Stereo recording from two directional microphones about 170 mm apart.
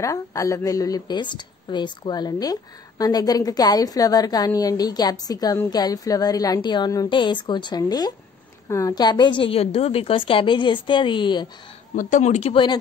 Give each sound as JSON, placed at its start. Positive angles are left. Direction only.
{"t": 0.0, "sound": "a woman's voice", "side_deg": 20}
{"t": 11.9, "sound": "speech", "side_deg": 50}